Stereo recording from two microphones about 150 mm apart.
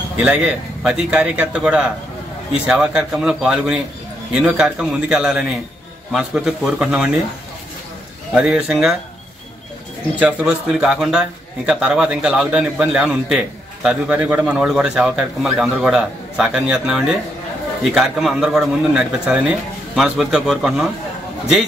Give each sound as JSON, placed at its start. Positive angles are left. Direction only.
{"t": 0.2, "sound": "a man's voice", "side_deg": -10}
{"t": 8.4, "sound": "a man's voice", "side_deg": -5}
{"t": 10.1, "sound": "a man's voice", "side_deg": -5}